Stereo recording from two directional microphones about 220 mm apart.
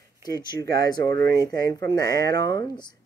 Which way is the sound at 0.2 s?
20° left (ahead or behind).